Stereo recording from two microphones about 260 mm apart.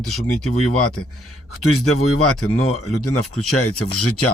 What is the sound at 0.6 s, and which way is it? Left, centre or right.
Speech, left.